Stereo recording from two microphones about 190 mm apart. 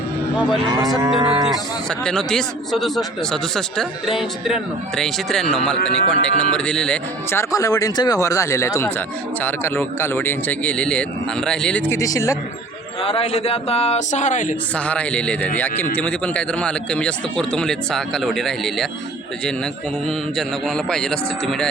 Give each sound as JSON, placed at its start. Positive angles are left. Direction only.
{"t": 0.6, "sound": "moo", "side_deg": -20}
{"t": 2.0, "sound": "speech", "side_deg": 5}
{"t": 11.9, "sound": "speech", "side_deg": 15}
{"t": 13.0, "sound": "a man's voice", "side_deg": 30}
{"t": 14.8, "sound": "speech", "side_deg": 5}
{"t": 20.1, "sound": "speech", "side_deg": 0}